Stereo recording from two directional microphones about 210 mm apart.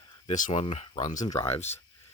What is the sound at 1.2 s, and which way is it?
Speech, 15° left (ahead or behind).